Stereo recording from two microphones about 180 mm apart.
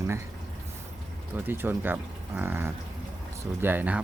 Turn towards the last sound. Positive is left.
turn(degrees=-10)  # may be behind; listen again after turning